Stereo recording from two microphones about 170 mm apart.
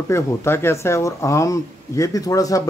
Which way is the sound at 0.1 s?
15° left (ahead or behind).